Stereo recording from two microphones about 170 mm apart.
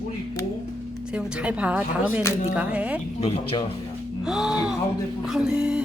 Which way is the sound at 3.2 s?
35° left (ahead or behind).